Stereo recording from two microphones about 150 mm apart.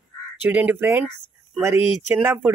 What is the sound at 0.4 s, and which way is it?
Speech, 10° right (ahead or behind).